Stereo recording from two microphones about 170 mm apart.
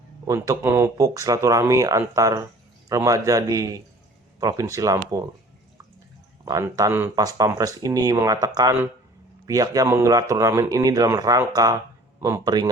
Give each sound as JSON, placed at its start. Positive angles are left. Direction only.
{"t": 0.3, "sound": "speech", "side_deg": -15}
{"t": 6.4, "sound": "speech", "side_deg": -20}